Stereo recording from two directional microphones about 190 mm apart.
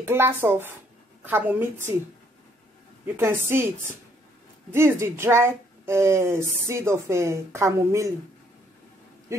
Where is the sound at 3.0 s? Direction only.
10° right (ahead or behind).